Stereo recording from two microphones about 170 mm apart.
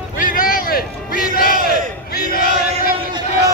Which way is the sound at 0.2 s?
55° left (ahead or behind).